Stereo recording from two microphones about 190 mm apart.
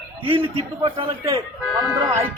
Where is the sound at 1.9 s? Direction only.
15° right (ahead or behind).